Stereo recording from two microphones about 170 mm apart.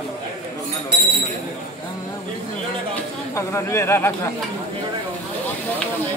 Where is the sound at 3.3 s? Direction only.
15° left (ahead or behind).